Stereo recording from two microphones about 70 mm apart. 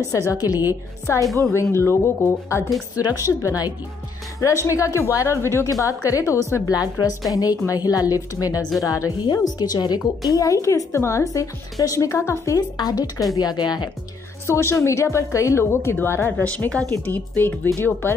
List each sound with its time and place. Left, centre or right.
0.1 s a woman's voice: left
1.1 s a woman's voice: left
3.4 s a woman's voice: left
4.4 s a woman's voice: left
5.7 s speech: left
6.7 s a woman's voice: left
9.2 s a woman's voice: left
10.3 s speech: left
12.5 s a woman's voice: left
13.4 s speech: left
14.4 s a woman's voice: left
16.4 s a woman's voice: centre